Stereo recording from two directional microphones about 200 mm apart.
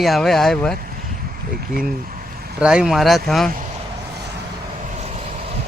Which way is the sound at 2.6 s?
5° right (ahead or behind).